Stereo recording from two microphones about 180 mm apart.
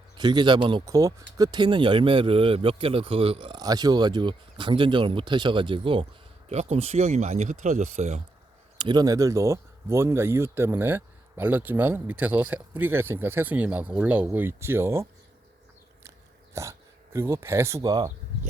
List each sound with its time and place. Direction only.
0.2 s speech: 25° right (ahead or behind)
8.8 s speech: 25° right (ahead or behind)
16.6 s speech: 15° right (ahead or behind)